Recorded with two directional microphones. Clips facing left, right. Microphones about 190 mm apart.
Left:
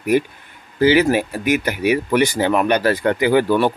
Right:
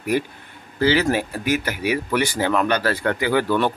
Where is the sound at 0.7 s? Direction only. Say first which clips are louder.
Left 4 dB; 15° left (ahead or behind).